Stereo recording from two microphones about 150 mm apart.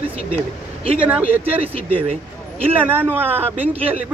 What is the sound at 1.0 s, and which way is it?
Speech, 10° right (ahead or behind).